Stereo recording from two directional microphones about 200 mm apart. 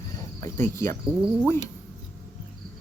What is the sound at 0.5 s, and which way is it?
Speech, 10° left (ahead or behind).